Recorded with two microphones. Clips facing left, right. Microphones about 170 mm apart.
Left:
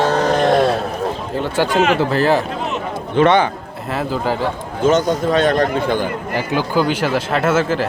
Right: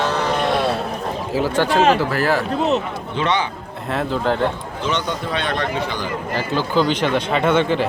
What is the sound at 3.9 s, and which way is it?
Speech, 5° left (ahead or behind).